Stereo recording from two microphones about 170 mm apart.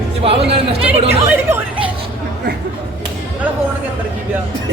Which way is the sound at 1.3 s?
15° right (ahead or behind).